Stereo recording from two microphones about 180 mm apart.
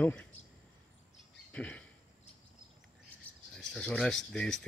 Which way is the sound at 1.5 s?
5° left (ahead or behind).